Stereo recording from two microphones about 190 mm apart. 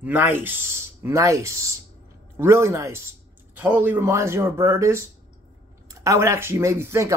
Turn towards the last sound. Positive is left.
turn(degrees=-15)  # may be behind; listen again after turning